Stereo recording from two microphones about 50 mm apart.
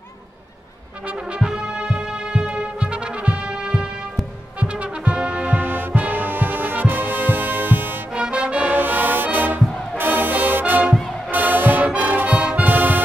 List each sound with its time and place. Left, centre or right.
1.0 s brass instrument: right
8.1 s music: right
8.7 s music: right
12.3 s music: right